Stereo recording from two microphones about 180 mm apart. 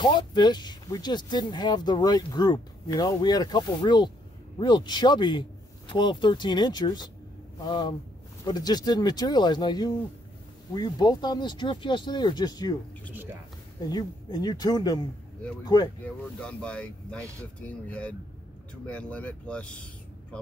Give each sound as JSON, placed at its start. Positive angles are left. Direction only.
{"t": 0.0, "sound": "speech", "side_deg": 25}
{"t": 13.1, "sound": "speech", "side_deg": -10}
{"t": 13.7, "sound": "speech", "side_deg": 20}
{"t": 16.4, "sound": "speech", "side_deg": 5}